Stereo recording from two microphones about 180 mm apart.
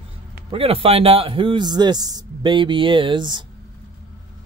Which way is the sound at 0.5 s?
30° right (ahead or behind).